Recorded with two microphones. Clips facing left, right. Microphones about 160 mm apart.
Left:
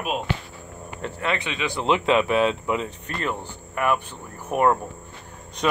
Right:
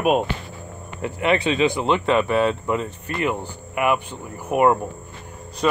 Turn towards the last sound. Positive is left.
turn(degrees=5)  # may be behind; listen again after turning